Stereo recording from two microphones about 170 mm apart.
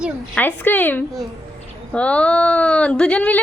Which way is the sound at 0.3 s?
10° left (ahead or behind).